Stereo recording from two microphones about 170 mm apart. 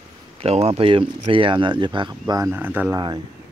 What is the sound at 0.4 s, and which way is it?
Speech, 35° right (ahead or behind).